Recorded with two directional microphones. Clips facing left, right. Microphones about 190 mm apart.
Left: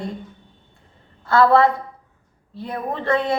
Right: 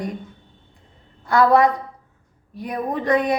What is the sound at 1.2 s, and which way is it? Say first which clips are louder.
A woman's voice: left 1 dB; 15° right (ahead or behind).